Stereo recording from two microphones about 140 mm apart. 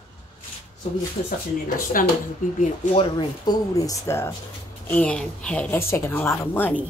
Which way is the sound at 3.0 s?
35° left (ahead or behind).